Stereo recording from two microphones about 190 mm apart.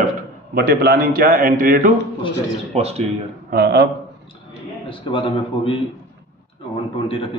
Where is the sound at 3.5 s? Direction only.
60° right (ahead or behind).